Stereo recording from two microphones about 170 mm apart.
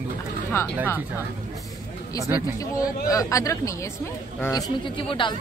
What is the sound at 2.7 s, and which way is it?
A woman's voice, 20° left (ahead or behind).